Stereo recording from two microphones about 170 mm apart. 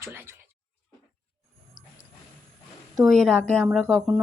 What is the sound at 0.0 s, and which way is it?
Speech, 15° right (ahead or behind).